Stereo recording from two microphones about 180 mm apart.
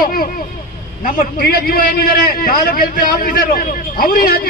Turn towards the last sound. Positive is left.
turn(degrees=55)  # may be behind; listen again after turning